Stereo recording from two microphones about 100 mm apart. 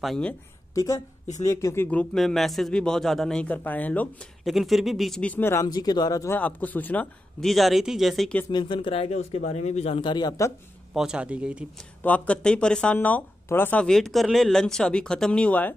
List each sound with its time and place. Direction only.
0.7 s speech: 30° left (ahead or behind)
1.8 s speech: 15° left (ahead or behind)
2.1 s speech: centre (ahead or behind)
4.5 s speech: centre (ahead or behind)
5.2 s speech: 20° left (ahead or behind)
5.7 s speech: 40° left (ahead or behind)
6.3 s speech: 15° left (ahead or behind)
7.3 s speech: centre (ahead or behind)
8.5 s speech: 50° left (ahead or behind); by 10.0 s 85° left
10.0 s speech: 45° left (ahead or behind)
10.9 s speech: 5° right (ahead or behind)
12.0 s speech: 15° left (ahead or behind)
13.8 s speech: 5° left (ahead or behind)